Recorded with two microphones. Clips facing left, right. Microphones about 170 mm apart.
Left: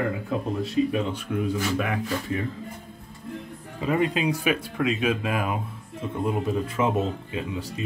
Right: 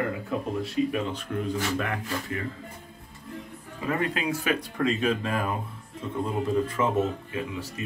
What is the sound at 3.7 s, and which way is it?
Speech, 20° left (ahead or behind).